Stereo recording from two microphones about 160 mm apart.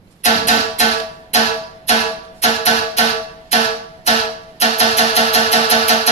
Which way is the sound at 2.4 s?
45° left (ahead or behind).